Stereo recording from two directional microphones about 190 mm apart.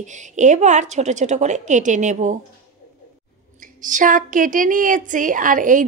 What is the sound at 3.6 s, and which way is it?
A woman's voice, 45° right (ahead or behind).